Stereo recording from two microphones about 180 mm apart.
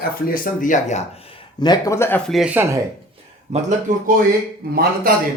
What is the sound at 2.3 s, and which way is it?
Speech, 5° right (ahead or behind).